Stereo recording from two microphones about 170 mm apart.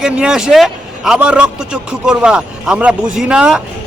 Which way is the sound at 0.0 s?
5° right (ahead or behind).